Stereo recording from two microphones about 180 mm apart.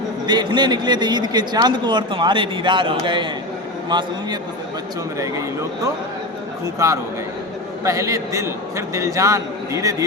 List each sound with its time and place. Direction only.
0.3 s speech: 25° right (ahead or behind)
6.7 s a man's voice: 20° right (ahead or behind)